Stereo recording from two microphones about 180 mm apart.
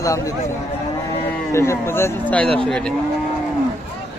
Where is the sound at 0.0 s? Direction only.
20° left (ahead or behind).